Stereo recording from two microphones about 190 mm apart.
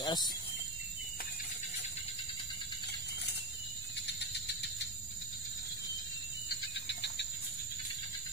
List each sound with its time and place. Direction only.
0.0 s speech: 20° left (ahead or behind)
4.2 s cricket: 65° left (ahead or behind)
6.5 s cricket: 65° left (ahead or behind)